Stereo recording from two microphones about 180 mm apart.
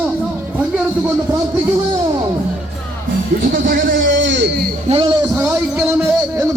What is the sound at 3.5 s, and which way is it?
Music, 55° right (ahead or behind).